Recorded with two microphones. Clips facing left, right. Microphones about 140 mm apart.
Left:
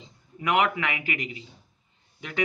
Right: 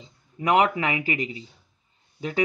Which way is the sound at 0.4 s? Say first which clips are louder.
Right 3 dB; 35° right (ahead or behind).